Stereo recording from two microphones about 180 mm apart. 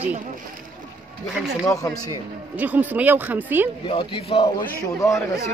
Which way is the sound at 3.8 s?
30° left (ahead or behind).